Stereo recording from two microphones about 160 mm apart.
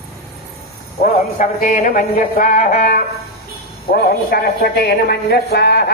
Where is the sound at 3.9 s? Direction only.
75° left (ahead or behind).